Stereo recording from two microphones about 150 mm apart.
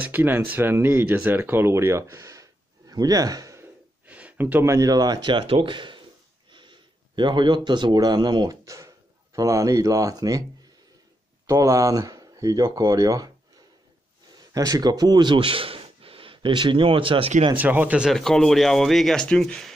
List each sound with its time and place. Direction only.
0.0 s speech: 10° right (ahead or behind)
4.0 s speech: 10° right (ahead or behind)
11.4 s speech: 20° right (ahead or behind)
14.5 s a man's voice: 25° right (ahead or behind)
17.6 s speech: 10° right (ahead or behind)